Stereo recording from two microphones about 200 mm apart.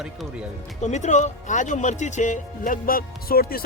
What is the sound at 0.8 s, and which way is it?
Speech, 35° left (ahead or behind).